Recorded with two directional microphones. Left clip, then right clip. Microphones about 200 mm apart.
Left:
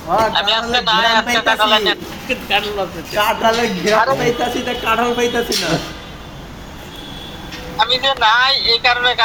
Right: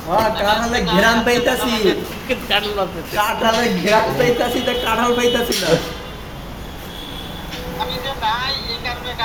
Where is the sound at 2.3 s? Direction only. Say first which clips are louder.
Left 1 dB; 5° right (ahead or behind).